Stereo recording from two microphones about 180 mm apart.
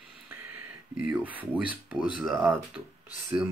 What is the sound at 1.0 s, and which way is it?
Speech, 10° right (ahead or behind).